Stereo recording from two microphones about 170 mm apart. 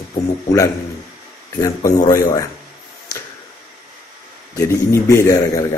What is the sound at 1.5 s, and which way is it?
Speech, 20° left (ahead or behind).